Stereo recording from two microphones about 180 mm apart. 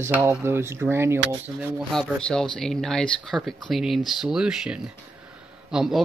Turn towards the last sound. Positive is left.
turn(degrees=-5)  # may be behind; listen again after turning